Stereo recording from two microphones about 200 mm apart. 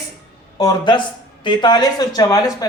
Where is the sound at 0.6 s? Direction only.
20° left (ahead or behind).